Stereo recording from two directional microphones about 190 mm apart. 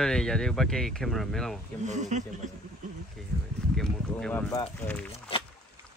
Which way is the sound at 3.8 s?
5° left (ahead or behind).